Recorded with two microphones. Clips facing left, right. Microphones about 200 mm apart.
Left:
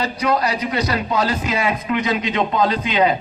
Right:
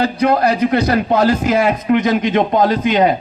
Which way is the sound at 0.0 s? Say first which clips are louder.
Right 6 dB; 55° right (ahead or behind).